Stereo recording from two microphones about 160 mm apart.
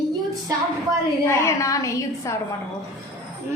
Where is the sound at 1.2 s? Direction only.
20° left (ahead or behind).